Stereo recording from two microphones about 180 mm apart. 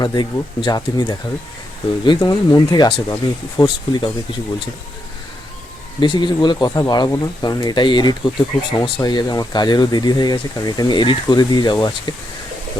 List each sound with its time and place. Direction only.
0.0 s speech: 25° left (ahead or behind)
6.0 s speech: 25° left (ahead or behind)